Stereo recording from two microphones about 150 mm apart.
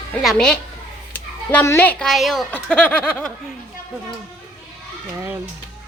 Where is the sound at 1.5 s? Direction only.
15° left (ahead or behind).